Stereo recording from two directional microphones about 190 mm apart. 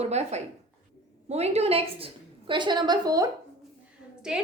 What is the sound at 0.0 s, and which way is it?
A woman's voice, 35° right (ahead or behind).